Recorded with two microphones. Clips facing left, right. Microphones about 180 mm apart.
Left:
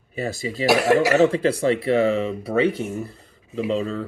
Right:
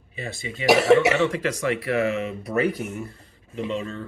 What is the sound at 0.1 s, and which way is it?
Speech, 40° left (ahead or behind).